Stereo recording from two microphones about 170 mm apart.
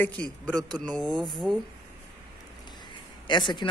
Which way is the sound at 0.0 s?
10° left (ahead or behind).